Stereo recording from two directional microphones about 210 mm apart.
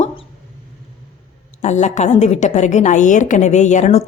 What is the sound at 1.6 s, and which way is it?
A woman's voice, 35° left (ahead or behind).